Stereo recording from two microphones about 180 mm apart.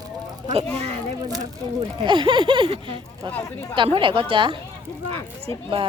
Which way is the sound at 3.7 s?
25° right (ahead or behind).